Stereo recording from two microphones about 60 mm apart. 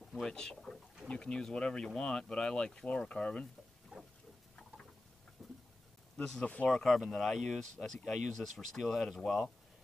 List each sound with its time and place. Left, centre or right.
0.1 s speech: centre
5.4 s a sound: centre
6.4 s speech: left
6.7 s speech: centre